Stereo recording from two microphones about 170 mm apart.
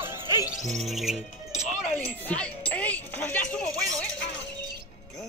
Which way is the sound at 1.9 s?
10° left (ahead or behind).